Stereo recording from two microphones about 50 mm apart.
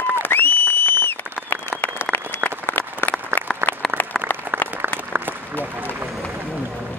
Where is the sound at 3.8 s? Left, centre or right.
Centre.